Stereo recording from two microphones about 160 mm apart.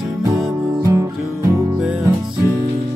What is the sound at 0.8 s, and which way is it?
Music, 20° right (ahead or behind).